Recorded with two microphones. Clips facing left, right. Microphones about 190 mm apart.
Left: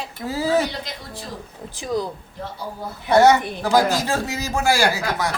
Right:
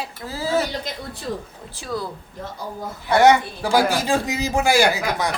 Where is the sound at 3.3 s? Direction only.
20° left (ahead or behind).